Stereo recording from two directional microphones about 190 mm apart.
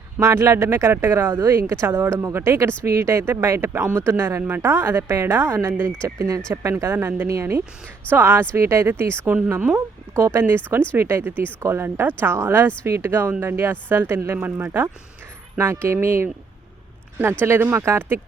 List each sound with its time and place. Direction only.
0.2 s speech: 15° right (ahead or behind)
17.4 s speech: 10° right (ahead or behind)